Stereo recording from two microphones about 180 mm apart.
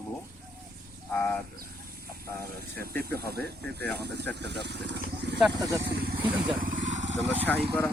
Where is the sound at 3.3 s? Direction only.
65° right (ahead or behind).